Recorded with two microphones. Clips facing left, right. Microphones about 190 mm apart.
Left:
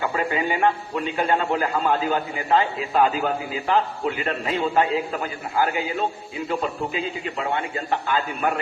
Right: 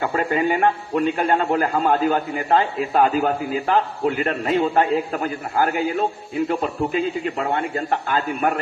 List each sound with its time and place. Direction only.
0.0 s a man's voice: 45° right (ahead or behind)